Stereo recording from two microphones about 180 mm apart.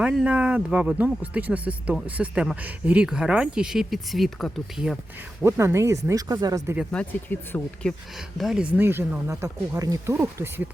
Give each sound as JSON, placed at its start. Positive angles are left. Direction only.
{"t": 0.0, "sound": "speech", "side_deg": -5}
{"t": 5.4, "sound": "speech", "side_deg": -15}
{"t": 6.9, "sound": "speech", "side_deg": 10}
{"t": 8.4, "sound": "speech", "side_deg": 0}